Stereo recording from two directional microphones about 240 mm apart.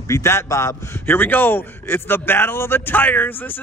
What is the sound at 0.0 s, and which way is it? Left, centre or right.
Speech, centre.